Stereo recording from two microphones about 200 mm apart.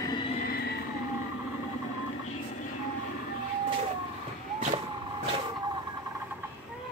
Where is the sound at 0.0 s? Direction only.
20° left (ahead or behind).